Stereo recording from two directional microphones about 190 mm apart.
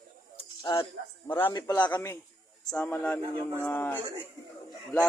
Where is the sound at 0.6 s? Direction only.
20° left (ahead or behind).